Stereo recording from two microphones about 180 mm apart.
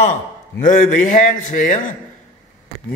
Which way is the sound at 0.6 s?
45° left (ahead or behind).